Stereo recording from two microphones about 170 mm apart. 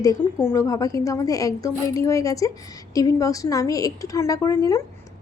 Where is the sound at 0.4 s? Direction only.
20° left (ahead or behind).